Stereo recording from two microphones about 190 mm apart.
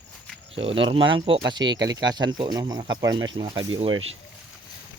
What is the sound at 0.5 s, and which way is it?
Speech, 30° right (ahead or behind).